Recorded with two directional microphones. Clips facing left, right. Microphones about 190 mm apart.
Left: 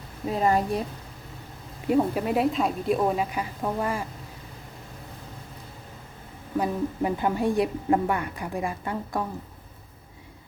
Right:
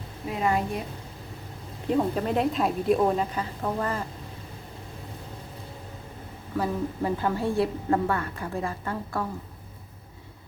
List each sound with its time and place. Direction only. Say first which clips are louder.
0.3 s a woman's voice: left 3 dB; 35° left (ahead or behind)
1.9 s a woman's voice: left 2 dB; 10° left (ahead or behind)
6.6 s a woman's voice: left 2 dB; 15° left (ahead or behind)